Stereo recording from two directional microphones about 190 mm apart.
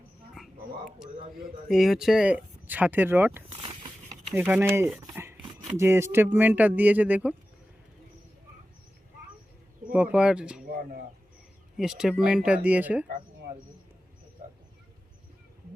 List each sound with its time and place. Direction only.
0.3 s a sound: centre (ahead or behind)
1.4 s speech: 50° right (ahead or behind)
1.7 s speech: centre (ahead or behind)
3.5 s a sound: 25° right (ahead or behind)
4.4 s speech: 10° right (ahead or behind)
9.9 s speech: 5° right (ahead or behind)
10.7 s speech: 50° right (ahead or behind)
11.8 s speech: 5° right (ahead or behind)